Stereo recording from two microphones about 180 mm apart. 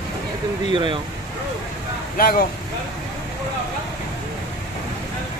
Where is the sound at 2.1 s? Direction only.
55° left (ahead or behind).